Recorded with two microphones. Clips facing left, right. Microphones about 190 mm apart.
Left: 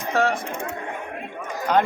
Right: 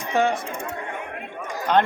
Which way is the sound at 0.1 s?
Centre (ahead or behind).